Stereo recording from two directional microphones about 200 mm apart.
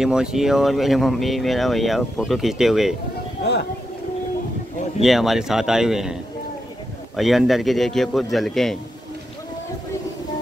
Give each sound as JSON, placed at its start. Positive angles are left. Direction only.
{"t": 0.0, "sound": "speech", "side_deg": -5}
{"t": 5.0, "sound": "speech", "side_deg": 0}
{"t": 7.2, "sound": "speech", "side_deg": 0}